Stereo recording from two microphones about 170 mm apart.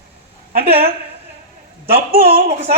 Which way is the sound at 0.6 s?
35° right (ahead or behind).